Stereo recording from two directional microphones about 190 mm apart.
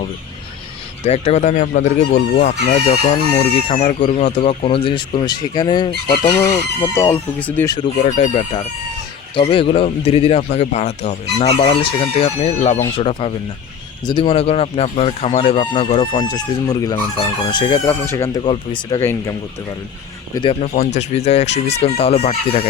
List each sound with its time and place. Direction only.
1.0 s speech: 35° left (ahead or behind); by 7.9 s 15° left (ahead or behind)
8.0 s speech: 40° left (ahead or behind)
9.3 s speech: 25° left (ahead or behind)
20.3 s speech: 30° left (ahead or behind)